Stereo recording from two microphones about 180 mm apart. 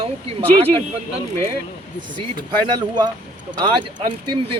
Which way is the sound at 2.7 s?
25° right (ahead or behind).